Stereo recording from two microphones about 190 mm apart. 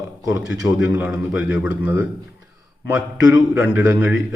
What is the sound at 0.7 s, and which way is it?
A man's voice, 5° right (ahead or behind).